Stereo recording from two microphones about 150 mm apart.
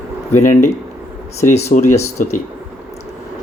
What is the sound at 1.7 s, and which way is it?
Speech, 55° left (ahead or behind).